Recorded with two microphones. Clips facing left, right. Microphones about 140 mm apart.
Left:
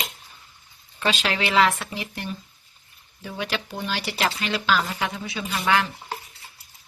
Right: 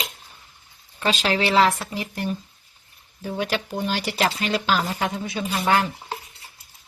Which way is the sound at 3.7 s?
45° right (ahead or behind).